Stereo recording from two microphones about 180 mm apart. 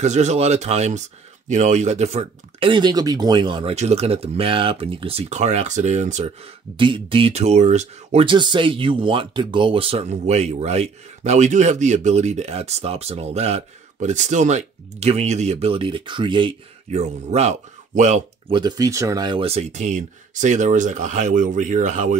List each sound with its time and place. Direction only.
0.0 s speech: 40° right (ahead or behind)
17.0 s speech: 40° right (ahead or behind)
18.5 s speech: 25° right (ahead or behind); by 22.1 s 40° right (ahead or behind)